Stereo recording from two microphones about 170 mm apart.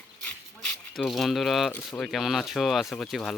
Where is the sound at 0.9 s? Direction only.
Centre (ahead or behind).